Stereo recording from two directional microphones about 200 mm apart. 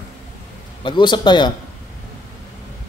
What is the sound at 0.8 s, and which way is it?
Speech, 25° left (ahead or behind).